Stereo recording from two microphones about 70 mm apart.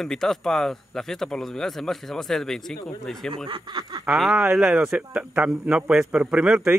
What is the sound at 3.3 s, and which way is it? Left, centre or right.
Speech, right.